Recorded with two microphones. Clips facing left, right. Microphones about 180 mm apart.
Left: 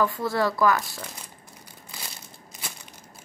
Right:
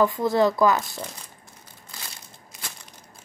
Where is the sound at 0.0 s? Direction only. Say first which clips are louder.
Right 4 dB; 20° right (ahead or behind).